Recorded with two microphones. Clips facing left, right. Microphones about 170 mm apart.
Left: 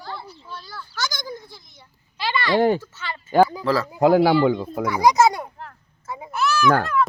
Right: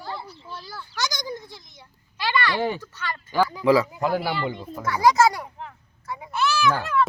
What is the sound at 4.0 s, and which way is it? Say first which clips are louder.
Speech: left 9 dB; 90° left.